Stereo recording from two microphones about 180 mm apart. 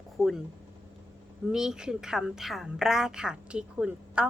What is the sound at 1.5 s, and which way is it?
A woman's voice, 5° right (ahead or behind).